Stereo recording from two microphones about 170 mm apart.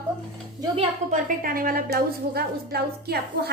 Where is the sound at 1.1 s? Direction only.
55° right (ahead or behind).